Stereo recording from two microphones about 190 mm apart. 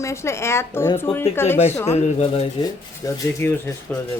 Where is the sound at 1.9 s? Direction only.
35° left (ahead or behind).